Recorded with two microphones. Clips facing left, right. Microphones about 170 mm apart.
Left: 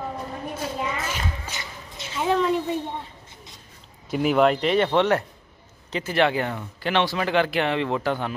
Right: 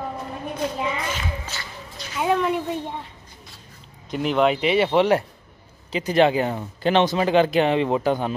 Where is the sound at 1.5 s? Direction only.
20° left (ahead or behind).